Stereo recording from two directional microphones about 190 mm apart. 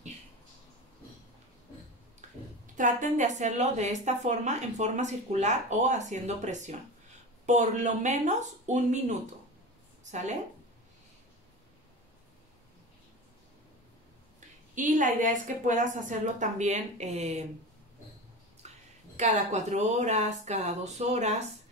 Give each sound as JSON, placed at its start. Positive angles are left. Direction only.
{"t": 2.6, "sound": "a woman's voice", "side_deg": -40}
{"t": 14.8, "sound": "a woman's voice", "side_deg": -40}
{"t": 18.6, "sound": "a sound", "side_deg": -35}
{"t": 19.1, "sound": "a woman's voice", "side_deg": -40}